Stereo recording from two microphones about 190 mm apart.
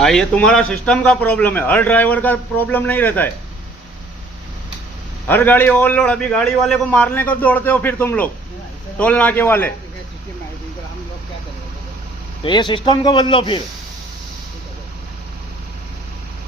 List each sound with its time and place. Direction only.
0.0 s a man's voice: 5° left (ahead or behind)
5.3 s a man's voice: 10° left (ahead or behind)
12.4 s a man's voice: 25° left (ahead or behind)